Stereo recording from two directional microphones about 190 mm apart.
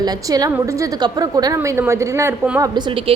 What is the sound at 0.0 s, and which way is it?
A woman's voice, 20° right (ahead or behind).